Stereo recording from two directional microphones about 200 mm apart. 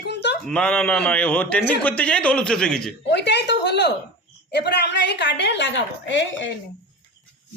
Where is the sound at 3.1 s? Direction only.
60° left (ahead or behind).